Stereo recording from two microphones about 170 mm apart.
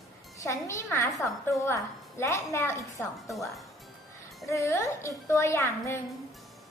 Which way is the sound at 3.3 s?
Centre (ahead or behind).